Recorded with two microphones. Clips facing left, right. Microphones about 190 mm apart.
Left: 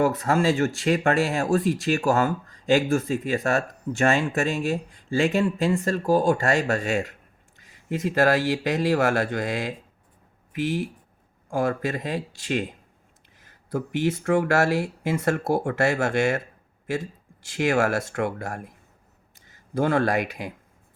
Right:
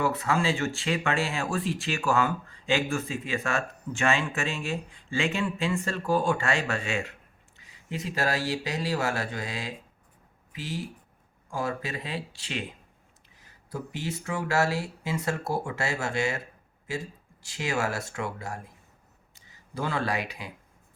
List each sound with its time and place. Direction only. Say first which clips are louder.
0.0 s speech: left 5 dB; 45° left (ahead or behind)
7.6 s speech: left 8 dB; 50° left (ahead or behind)
13.7 s speech: left 9 dB; 55° left (ahead or behind)
17.4 s speech: left 7 dB; 55° left (ahead or behind)
19.7 s speech: left 8 dB; 50° left (ahead or behind)